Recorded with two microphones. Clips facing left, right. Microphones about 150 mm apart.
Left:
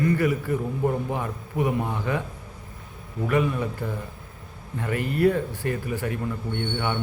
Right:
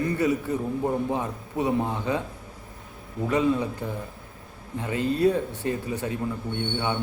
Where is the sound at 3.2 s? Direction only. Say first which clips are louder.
Right 1 dB; 20° right (ahead or behind).